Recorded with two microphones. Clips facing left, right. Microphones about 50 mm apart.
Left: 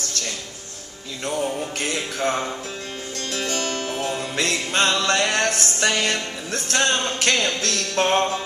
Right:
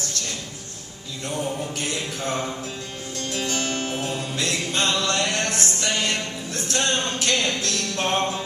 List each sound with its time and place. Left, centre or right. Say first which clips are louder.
1.8 s mantra: left 3 dB; left
3.2 s music: even; left
5.8 s speech: left 4 dB; left